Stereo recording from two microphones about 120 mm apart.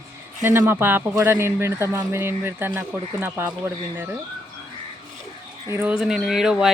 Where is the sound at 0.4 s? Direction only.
20° right (ahead or behind).